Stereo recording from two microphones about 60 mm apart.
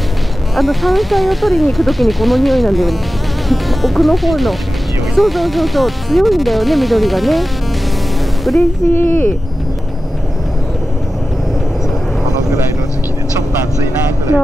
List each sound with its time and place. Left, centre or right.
0.6 s speech: centre
8.5 s speech: centre
8.9 s speech: left